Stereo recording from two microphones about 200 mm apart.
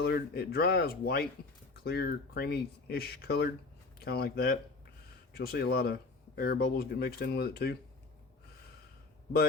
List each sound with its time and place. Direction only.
0.0 s speech: 50° left (ahead or behind)